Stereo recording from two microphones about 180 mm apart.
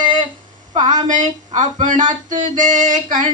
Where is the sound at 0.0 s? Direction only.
25° right (ahead or behind).